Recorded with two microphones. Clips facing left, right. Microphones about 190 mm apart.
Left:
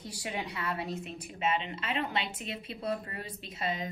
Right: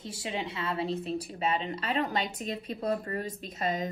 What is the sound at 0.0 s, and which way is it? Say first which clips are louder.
A woman's voice: right 3 dB; 25° right (ahead or behind).